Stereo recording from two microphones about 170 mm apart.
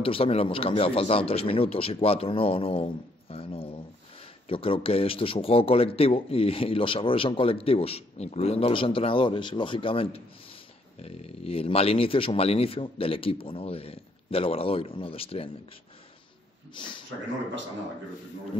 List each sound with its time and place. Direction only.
0.0 s a man's voice: 35° left (ahead or behind)
16.7 s speech: 30° left (ahead or behind)